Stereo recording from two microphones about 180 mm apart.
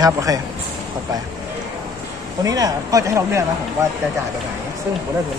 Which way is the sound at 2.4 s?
20° right (ahead or behind).